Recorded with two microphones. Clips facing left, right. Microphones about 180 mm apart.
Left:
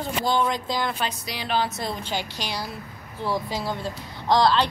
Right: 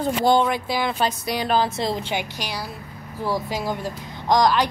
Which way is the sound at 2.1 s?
10° right (ahead or behind).